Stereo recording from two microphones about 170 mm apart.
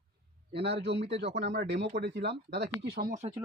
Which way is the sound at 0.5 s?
75° right (ahead or behind).